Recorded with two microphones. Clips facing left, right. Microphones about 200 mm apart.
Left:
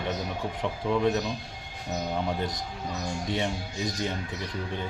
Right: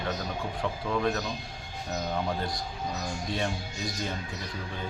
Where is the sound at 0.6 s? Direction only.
20° left (ahead or behind).